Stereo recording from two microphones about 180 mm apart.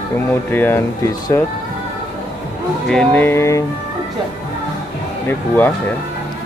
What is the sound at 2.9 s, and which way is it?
Speech, 10° left (ahead or behind).